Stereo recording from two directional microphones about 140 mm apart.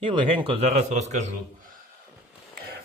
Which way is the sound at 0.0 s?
40° right (ahead or behind).